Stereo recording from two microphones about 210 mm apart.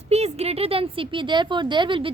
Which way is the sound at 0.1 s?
30° right (ahead or behind).